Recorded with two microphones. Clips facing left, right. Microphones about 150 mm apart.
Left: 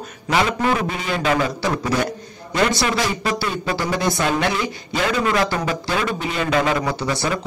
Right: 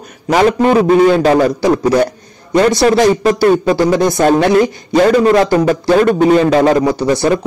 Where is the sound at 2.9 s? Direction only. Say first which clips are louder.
Right 12 dB; 45° right (ahead or behind).